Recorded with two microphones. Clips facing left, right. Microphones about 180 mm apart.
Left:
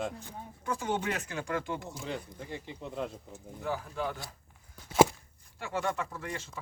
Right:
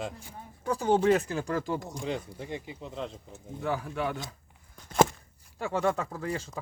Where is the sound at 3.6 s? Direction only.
70° right (ahead or behind).